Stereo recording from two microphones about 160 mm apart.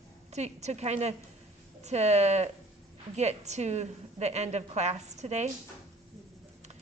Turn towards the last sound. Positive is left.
turn(degrees=-45)  # may be behind; listen again after turning